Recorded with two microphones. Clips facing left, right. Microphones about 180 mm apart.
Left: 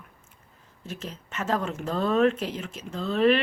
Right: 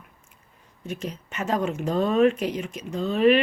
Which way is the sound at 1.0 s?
15° right (ahead or behind).